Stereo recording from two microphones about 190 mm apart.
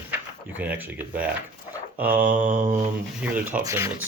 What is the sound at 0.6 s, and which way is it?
Speech, 10° right (ahead or behind).